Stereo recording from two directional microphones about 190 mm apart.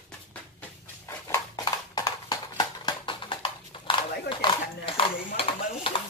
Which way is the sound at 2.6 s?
25° left (ahead or behind).